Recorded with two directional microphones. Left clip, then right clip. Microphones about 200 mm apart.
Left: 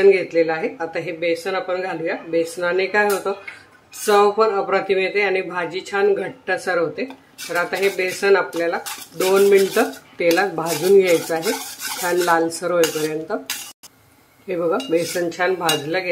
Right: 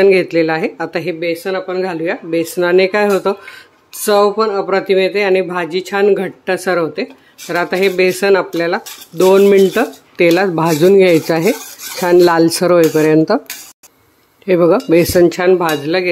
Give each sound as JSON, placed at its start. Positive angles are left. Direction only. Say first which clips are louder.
{"t": 0.0, "sound": "speech", "louder": "right 4 dB", "side_deg": -45}
{"t": 14.5, "sound": "speech", "louder": "right 9 dB", "side_deg": -40}